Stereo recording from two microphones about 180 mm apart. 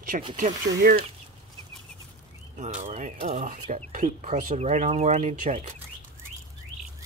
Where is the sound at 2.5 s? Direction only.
40° right (ahead or behind).